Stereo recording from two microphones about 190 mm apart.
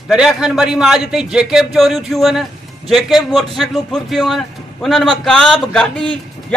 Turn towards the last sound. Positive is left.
turn(degrees=5)  # may be behind; listen again after turning